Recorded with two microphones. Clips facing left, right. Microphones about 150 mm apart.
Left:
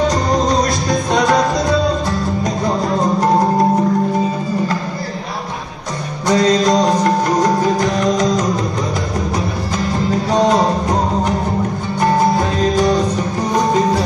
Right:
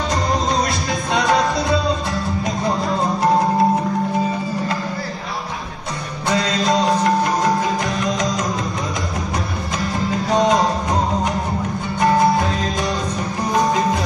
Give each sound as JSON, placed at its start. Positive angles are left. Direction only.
{"t": 6.2, "sound": "music", "side_deg": 40}